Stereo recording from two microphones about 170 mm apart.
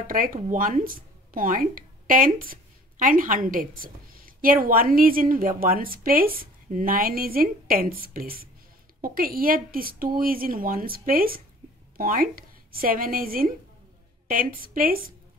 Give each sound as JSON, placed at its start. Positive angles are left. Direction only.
{"t": 0.0, "sound": "speech", "side_deg": -55}